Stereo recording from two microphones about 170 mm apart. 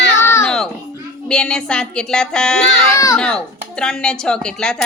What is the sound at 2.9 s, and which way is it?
Speech, 20° left (ahead or behind).